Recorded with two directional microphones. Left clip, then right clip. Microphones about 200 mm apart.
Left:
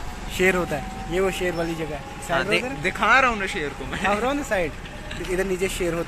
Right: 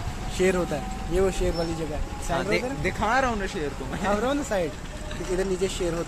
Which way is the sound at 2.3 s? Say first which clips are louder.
Left 3 dB; centre (ahead or behind).